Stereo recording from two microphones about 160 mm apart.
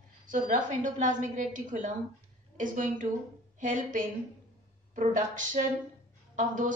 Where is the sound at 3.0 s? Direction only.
50° right (ahead or behind).